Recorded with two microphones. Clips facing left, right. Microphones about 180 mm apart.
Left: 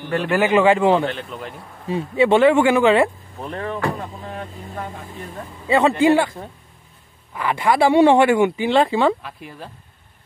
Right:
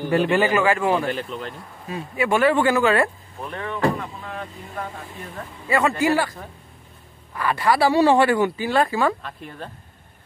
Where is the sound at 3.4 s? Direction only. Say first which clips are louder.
Right 1 dB; 35° left (ahead or behind).